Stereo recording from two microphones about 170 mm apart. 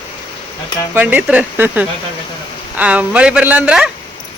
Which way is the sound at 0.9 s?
10° right (ahead or behind).